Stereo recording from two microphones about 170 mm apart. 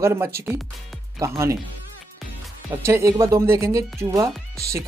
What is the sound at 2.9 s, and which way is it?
Speech, 20° right (ahead or behind).